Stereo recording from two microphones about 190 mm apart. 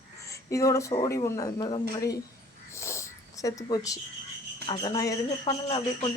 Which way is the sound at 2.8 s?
15° left (ahead or behind).